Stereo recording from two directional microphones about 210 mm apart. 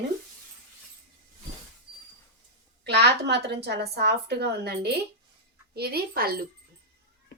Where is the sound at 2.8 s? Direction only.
55° right (ahead or behind).